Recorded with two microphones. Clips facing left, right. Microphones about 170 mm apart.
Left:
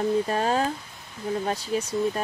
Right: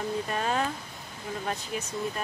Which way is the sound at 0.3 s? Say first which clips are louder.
Left 5 dB; 35° left (ahead or behind).